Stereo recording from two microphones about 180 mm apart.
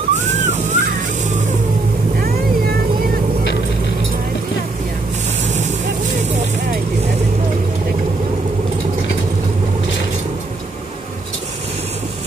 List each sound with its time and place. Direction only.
0.1 s vehicle: 40° right (ahead or behind)